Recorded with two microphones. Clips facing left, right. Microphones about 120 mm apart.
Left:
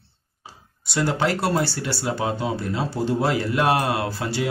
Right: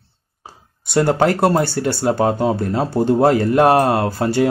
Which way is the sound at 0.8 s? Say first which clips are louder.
Right 7 dB; 50° right (ahead or behind).